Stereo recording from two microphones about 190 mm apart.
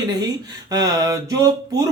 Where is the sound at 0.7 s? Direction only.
20° right (ahead or behind).